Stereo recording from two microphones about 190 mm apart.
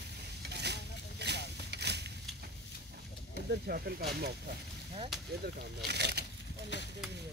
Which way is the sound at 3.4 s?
55° right (ahead or behind).